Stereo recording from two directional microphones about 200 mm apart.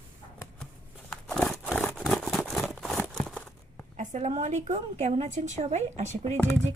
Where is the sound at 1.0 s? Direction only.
Centre (ahead or behind).